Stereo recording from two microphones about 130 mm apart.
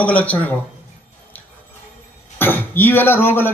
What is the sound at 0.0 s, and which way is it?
Speech, 10° left (ahead or behind).